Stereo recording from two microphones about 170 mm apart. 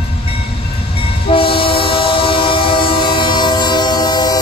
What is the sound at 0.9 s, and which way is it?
Train, 30° left (ahead or behind).